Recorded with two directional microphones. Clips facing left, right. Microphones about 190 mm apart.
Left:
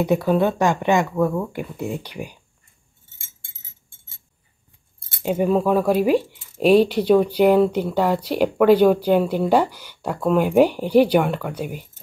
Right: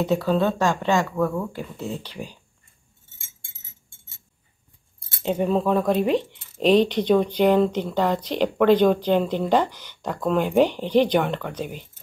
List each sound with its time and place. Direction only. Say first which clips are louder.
0.0 s speech: left 3 dB; 15° left (ahead or behind)
5.2 s speech: left 3 dB; 10° left (ahead or behind)